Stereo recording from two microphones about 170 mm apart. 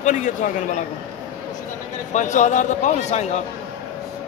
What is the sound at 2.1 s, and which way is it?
A man's voice, 45° left (ahead or behind).